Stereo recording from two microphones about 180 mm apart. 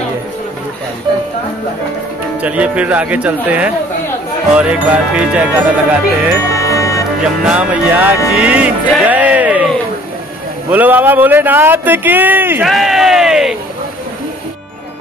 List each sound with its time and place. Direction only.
2.4 s speech: 5° right (ahead or behind)
6.6 s music: 15° left (ahead or behind)
7.4 s speech: 5° right (ahead or behind)
10.7 s speech: 10° right (ahead or behind)
12.7 s a sound: centre (ahead or behind)